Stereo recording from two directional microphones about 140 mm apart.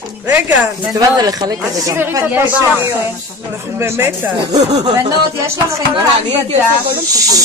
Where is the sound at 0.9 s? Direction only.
25° right (ahead or behind).